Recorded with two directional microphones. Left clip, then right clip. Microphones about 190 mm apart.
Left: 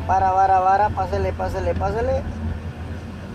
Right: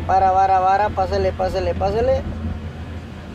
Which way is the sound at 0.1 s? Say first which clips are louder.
Right 2 dB; 20° right (ahead or behind).